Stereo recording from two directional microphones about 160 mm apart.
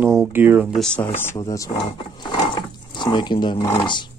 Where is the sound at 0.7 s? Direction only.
5° left (ahead or behind).